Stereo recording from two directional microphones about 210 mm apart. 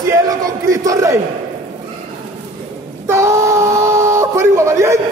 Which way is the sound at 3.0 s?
15° right (ahead or behind).